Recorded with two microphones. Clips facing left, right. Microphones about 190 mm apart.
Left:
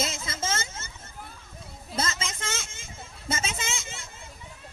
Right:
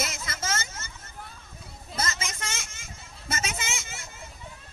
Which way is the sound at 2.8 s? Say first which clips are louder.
Left 3 dB; 25° left (ahead or behind).